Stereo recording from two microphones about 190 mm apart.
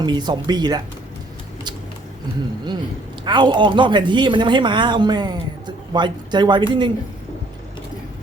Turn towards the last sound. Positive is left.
turn(degrees=-25)  # may be behind; listen again after turning